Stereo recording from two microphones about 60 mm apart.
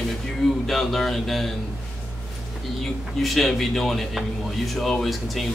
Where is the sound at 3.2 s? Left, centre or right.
Centre.